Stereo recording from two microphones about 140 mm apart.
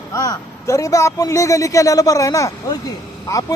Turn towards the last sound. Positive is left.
turn(degrees=25)  # may be behind; listen again after turning